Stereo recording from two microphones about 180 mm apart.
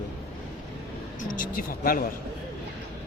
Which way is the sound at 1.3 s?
50° left (ahead or behind).